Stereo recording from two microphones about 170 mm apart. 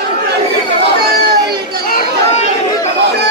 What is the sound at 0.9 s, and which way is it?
Chatter, 65° right (ahead or behind).